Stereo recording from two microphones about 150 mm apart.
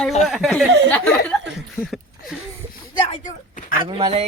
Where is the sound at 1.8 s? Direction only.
20° left (ahead or behind).